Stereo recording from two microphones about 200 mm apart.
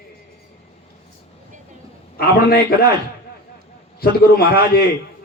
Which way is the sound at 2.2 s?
50° left (ahead or behind).